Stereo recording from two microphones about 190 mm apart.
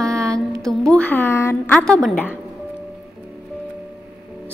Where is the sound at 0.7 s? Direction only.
5° left (ahead or behind).